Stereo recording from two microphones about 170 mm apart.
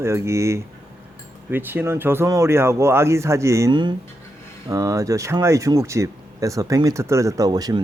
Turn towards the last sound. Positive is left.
turn(degrees=-20)  # may be behind; listen again after turning